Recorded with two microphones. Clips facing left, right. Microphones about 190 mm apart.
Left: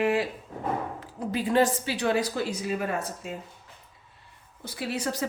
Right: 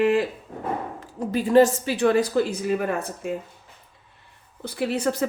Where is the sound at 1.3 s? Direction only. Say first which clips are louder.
Right 7 dB; 45° right (ahead or behind).